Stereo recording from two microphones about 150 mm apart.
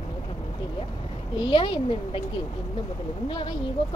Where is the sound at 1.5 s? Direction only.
35° left (ahead or behind).